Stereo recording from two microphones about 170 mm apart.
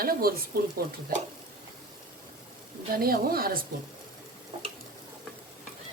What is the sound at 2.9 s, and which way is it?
Speech, 60° right (ahead or behind).